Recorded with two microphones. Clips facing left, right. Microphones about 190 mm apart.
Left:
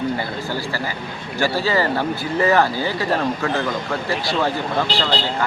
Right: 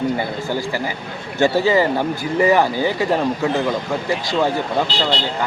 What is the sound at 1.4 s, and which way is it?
Speech, 15° right (ahead or behind).